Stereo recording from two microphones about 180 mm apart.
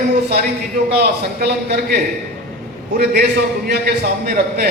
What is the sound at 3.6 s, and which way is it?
A man's voice, 60° right (ahead or behind).